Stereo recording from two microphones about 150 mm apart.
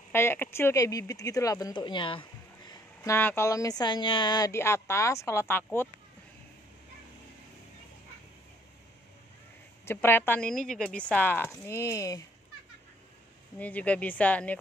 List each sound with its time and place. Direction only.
0.1 s speech: 15° left (ahead or behind)
9.8 s speech: 15° left (ahead or behind)
13.6 s speech: 10° left (ahead or behind)